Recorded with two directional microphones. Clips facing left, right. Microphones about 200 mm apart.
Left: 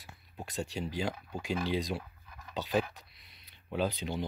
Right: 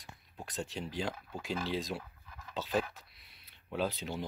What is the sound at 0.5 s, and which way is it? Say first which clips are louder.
Speech: left 3 dB; centre (ahead or behind).